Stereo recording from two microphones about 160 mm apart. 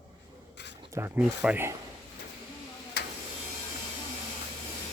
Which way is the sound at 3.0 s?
90° left.